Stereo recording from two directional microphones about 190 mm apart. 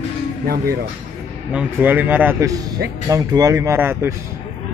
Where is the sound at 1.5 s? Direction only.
10° right (ahead or behind).